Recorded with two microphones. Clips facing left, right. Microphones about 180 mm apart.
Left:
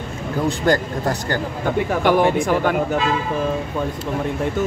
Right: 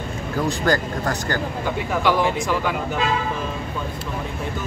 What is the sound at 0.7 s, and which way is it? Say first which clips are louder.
Speech: left 4 dB; 25° left (ahead or behind).